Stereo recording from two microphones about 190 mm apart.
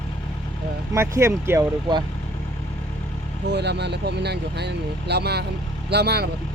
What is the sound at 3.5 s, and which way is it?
Speech, 65° right (ahead or behind).